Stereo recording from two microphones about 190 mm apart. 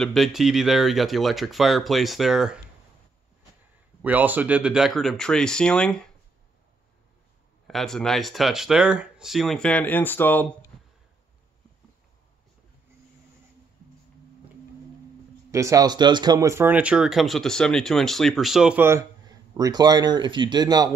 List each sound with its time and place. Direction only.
0.0 s speech: centre (ahead or behind)
4.0 s speech: 10° right (ahead or behind)
7.6 s speech: centre (ahead or behind)
15.5 s speech: 15° right (ahead or behind)